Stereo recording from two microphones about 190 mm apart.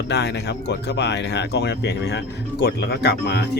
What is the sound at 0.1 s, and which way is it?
Speech, 65° left (ahead or behind).